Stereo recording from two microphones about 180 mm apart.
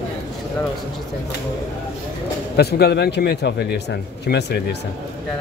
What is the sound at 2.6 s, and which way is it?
Speech, 65° left (ahead or behind).